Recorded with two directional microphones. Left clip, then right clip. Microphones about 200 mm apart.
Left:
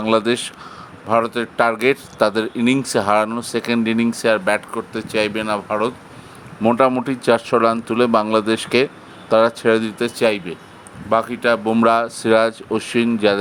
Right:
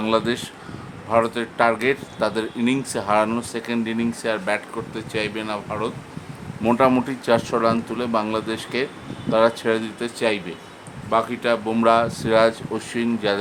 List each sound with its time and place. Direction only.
0.0 s speech: 25° left (ahead or behind)
7.0 s speech: 25° left (ahead or behind)